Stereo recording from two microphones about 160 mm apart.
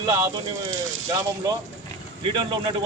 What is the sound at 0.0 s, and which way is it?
Speech, 25° right (ahead or behind).